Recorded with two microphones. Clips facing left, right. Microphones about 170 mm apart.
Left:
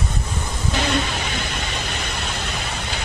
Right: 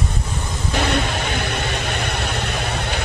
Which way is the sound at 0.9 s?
55° right (ahead or behind).